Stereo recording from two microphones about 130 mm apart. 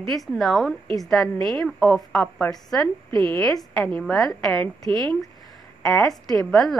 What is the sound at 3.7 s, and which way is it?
A woman's voice, 5° left (ahead or behind).